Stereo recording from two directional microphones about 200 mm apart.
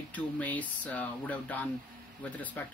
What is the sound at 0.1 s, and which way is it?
Speech, 10° left (ahead or behind).